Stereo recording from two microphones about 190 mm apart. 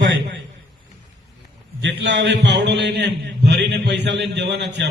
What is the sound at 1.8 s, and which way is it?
A man's voice, 70° right (ahead or behind).